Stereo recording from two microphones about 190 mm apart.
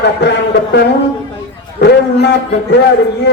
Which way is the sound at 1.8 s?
65° left (ahead or behind).